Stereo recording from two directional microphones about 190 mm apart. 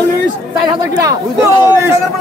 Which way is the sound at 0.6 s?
15° right (ahead or behind).